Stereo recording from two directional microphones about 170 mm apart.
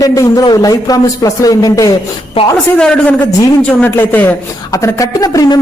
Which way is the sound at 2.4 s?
35° left (ahead or behind).